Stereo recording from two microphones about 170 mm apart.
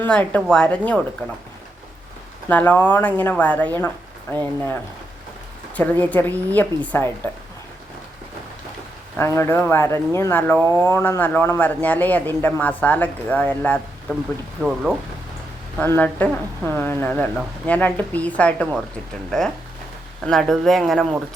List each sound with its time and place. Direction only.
0.0 s a man's voice: 10° left (ahead or behind)
2.5 s a man's voice: 10° left (ahead or behind)
9.1 s a man's voice: 15° left (ahead or behind)
10.6 s speech: 20° right (ahead or behind)
10.8 s a man's voice: 15° left (ahead or behind)
14.6 s speech: 5° right (ahead or behind)
15.8 s a man's voice: 10° left (ahead or behind)